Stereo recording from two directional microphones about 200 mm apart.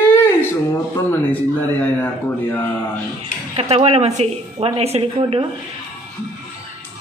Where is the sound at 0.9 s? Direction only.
10° left (ahead or behind).